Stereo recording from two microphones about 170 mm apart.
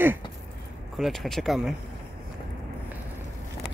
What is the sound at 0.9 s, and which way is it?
Speech, centre (ahead or behind).